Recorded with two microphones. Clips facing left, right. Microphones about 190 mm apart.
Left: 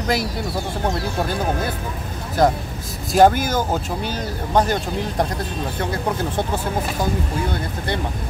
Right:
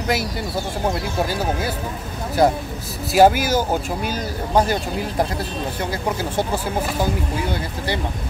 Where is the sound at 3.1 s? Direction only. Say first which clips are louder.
Even; 5° right (ahead or behind).